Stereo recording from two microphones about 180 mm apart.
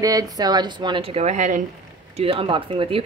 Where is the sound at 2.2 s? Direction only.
30° right (ahead or behind).